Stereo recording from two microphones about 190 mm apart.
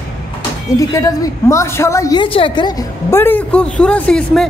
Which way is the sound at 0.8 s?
15° left (ahead or behind).